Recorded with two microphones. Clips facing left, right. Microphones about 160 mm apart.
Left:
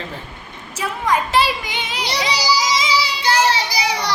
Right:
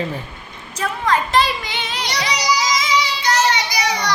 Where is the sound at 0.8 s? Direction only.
10° left (ahead or behind).